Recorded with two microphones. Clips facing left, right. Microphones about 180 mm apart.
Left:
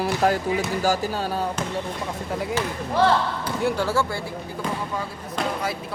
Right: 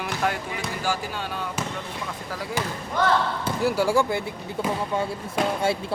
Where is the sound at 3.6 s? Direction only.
10° right (ahead or behind).